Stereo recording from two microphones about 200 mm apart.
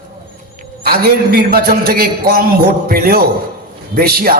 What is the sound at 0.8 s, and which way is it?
A man's voice, 50° right (ahead or behind).